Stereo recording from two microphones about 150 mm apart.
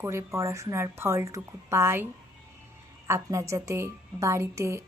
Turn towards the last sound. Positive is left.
turn(degrees=-20)  # may be behind; listen again after turning